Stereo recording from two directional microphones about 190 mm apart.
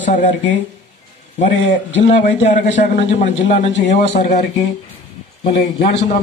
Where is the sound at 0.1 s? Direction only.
40° left (ahead or behind).